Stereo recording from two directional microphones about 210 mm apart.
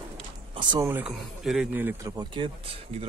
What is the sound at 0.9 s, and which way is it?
Speech, 5° right (ahead or behind).